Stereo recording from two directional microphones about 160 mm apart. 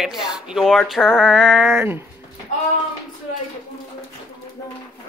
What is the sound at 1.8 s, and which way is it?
Speech, 15° right (ahead or behind).